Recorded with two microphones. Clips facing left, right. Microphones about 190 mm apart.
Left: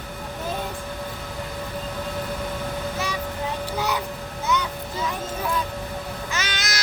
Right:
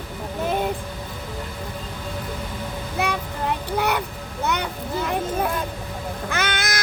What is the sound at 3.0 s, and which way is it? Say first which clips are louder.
Child singing: right 8 dB; 60° right (ahead or behind).